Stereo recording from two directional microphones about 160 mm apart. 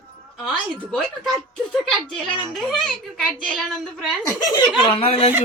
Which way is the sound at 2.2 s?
30° left (ahead or behind).